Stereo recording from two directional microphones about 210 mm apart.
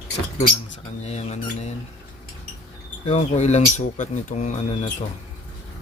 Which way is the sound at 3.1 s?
30° left (ahead or behind).